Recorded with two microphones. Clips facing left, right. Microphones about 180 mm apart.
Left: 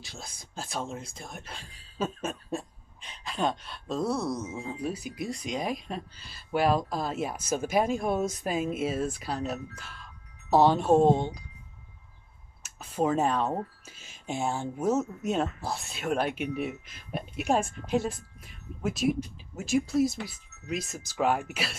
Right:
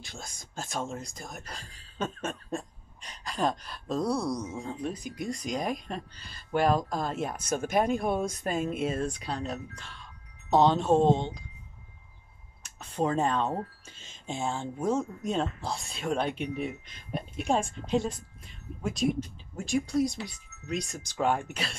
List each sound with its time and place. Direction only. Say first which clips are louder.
0.0 s speech: even; centre (ahead or behind)
12.6 s speech: left 2 dB; 5° left (ahead or behind)